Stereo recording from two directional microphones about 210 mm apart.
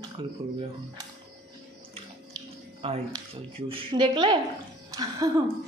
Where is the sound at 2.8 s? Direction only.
25° right (ahead or behind).